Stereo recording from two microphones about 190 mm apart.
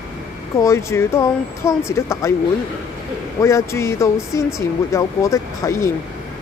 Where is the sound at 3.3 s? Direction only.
15° left (ahead or behind).